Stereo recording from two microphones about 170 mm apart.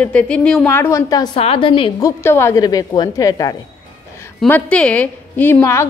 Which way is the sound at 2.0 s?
15° left (ahead or behind).